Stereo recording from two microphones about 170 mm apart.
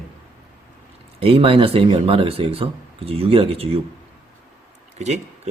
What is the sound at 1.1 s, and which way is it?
Speech, 35° right (ahead or behind).